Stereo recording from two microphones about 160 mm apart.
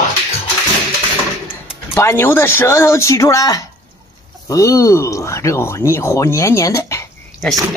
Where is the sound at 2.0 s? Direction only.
15° left (ahead or behind).